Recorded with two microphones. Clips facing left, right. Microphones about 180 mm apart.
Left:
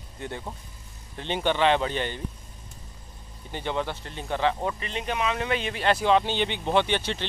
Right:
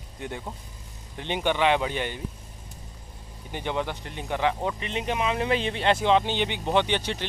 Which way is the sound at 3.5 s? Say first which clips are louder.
Even; 15° right (ahead or behind).